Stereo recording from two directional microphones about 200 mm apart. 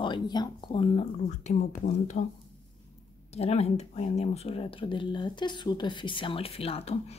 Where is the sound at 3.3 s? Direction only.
30° left (ahead or behind).